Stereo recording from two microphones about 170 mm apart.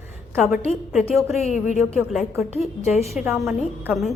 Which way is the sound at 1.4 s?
40° left (ahead or behind).